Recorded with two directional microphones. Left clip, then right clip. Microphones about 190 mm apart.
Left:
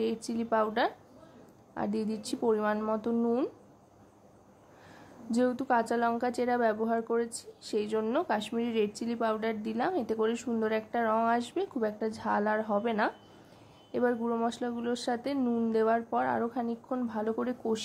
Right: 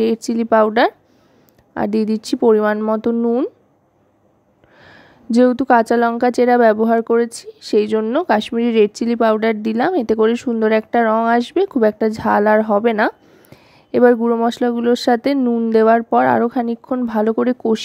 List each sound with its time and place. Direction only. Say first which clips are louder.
0.0 s a woman's voice: right 15 dB; 45° right (ahead or behind)
4.8 s a woman's voice: right 13 dB; 45° right (ahead or behind)
15.4 s speech: right 13 dB; 30° right (ahead or behind)
15.7 s a woman's voice: right 16 dB; 45° right (ahead or behind)